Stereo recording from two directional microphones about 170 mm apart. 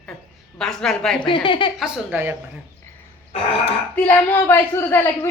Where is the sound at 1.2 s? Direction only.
30° left (ahead or behind).